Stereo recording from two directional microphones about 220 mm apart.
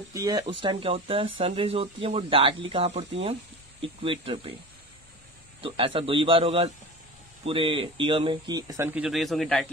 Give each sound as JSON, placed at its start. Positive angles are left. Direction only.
{"t": 0.1, "sound": "speech", "side_deg": -15}
{"t": 5.6, "sound": "speech", "side_deg": -25}